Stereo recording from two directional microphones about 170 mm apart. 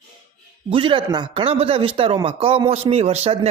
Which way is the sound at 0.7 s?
30° right (ahead or behind).